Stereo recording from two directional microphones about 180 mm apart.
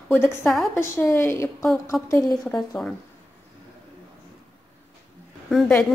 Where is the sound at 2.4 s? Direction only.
5° left (ahead or behind).